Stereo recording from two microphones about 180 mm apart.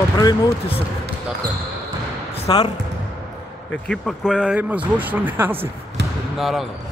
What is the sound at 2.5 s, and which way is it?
Speech, 25° left (ahead or behind).